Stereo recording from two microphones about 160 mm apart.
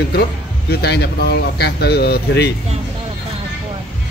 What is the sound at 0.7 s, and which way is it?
Speech, 90° left.